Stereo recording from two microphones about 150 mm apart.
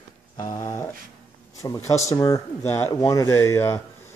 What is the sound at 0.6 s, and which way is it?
Speech, 20° left (ahead or behind).